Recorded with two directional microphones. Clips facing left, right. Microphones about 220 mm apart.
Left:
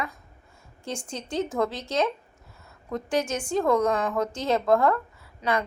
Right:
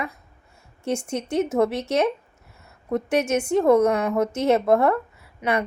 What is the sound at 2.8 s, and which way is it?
Speech, 25° right (ahead or behind).